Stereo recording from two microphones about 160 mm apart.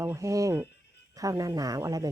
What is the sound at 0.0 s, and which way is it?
A woman's voice, 20° right (ahead or behind).